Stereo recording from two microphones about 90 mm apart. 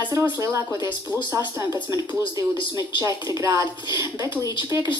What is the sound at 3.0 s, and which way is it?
A woman's voice, 35° right (ahead or behind).